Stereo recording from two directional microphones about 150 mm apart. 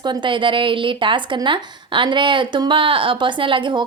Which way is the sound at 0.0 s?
30° right (ahead or behind).